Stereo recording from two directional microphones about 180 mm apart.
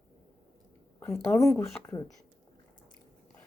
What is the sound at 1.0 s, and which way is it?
A woman's voice, 15° left (ahead or behind).